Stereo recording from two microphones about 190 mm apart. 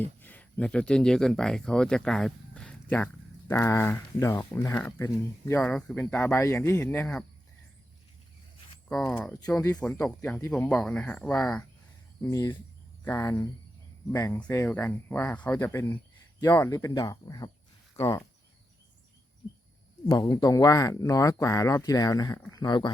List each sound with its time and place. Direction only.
0.2 s speech: 10° left (ahead or behind)
8.9 s speech: 5° left (ahead or behind)
12.2 s speech: 20° left (ahead or behind)
20.1 s speech: 20° left (ahead or behind)